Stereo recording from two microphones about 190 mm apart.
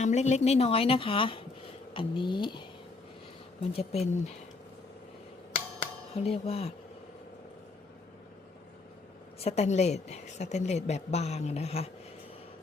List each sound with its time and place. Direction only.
0.0 s a woman's voice: 35° left (ahead or behind)
5.8 s speech: 30° left (ahead or behind)
9.4 s a woman's voice: 35° left (ahead or behind)